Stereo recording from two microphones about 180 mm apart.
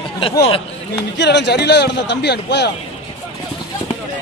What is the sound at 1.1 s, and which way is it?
A man's voice, 70° left (ahead or behind).